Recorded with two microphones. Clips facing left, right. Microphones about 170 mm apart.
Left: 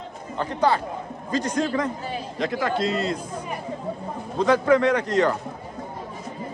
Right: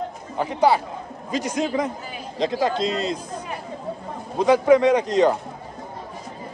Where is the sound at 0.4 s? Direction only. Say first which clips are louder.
Right 3 dB; 10° right (ahead or behind).